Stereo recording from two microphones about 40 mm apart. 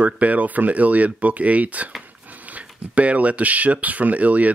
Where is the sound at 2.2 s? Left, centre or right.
Right.